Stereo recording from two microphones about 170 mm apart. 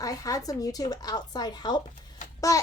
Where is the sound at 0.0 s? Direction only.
20° left (ahead or behind).